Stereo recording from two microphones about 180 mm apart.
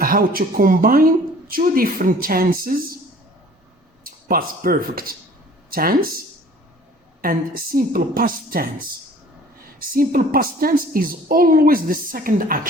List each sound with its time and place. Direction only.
0.0 s speech: 55° right (ahead or behind)
4.0 s speech: 55° right (ahead or behind)